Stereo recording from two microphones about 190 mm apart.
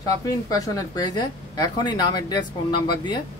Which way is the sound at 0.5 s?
20° left (ahead or behind).